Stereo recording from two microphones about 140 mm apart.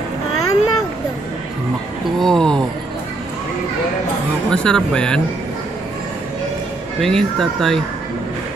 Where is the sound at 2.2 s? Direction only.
5° left (ahead or behind).